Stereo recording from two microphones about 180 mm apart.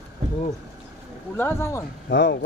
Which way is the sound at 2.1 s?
70° left (ahead or behind).